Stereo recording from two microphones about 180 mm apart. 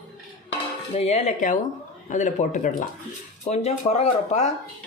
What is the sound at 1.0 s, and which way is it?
Speech, 40° left (ahead or behind).